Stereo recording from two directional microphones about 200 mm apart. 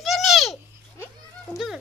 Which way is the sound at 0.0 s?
Centre (ahead or behind).